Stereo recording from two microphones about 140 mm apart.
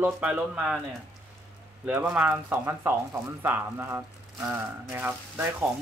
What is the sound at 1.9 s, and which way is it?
A man's voice, 10° right (ahead or behind).